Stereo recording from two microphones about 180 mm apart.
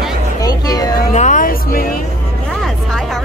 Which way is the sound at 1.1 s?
40° left (ahead or behind).